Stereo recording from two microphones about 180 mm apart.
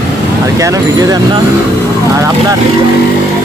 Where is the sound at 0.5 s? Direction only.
20° right (ahead or behind).